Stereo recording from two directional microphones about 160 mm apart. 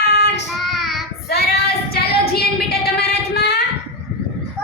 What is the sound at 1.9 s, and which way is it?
Child singing, 75° left (ahead or behind).